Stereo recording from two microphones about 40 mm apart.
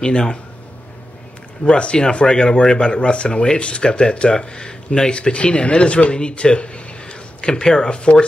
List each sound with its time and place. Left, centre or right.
0.0 s speech: left
1.7 s speech: left